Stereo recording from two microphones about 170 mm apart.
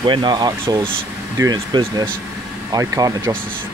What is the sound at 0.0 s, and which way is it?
Speech, 25° right (ahead or behind).